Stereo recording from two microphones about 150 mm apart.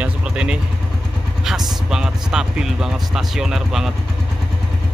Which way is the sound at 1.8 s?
5° right (ahead or behind).